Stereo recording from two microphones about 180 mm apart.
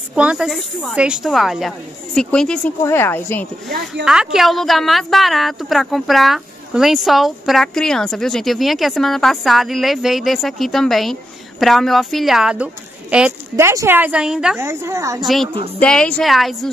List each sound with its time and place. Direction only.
0.1 s a woman's voice: 5° right (ahead or behind); by 3.4 s 10° left (ahead or behind)
4.0 s a woman's voice: 5° right (ahead or behind)
14.6 s a woman's voice: 15° right (ahead or behind)
15.2 s a woman's voice: centre (ahead or behind)